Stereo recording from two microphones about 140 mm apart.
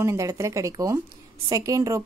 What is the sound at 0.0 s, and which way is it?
Speech, 20° right (ahead or behind).